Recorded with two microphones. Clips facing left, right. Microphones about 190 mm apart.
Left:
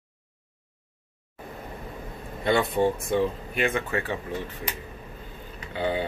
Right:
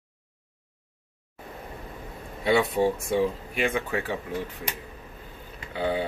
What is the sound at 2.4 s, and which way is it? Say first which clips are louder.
Speech: even; 5° right (ahead or behind).